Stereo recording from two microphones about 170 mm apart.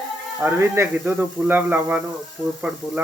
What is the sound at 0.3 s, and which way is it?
Speech, 15° right (ahead or behind).